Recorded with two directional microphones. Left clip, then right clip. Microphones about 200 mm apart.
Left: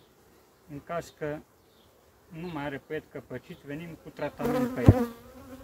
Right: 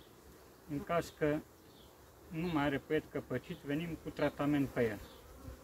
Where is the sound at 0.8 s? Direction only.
5° left (ahead or behind).